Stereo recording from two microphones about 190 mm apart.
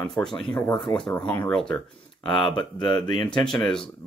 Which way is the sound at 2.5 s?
25° left (ahead or behind).